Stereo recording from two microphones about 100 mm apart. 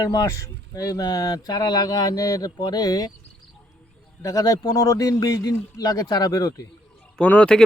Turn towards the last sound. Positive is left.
turn(degrees=10)  # may be behind; listen again after turning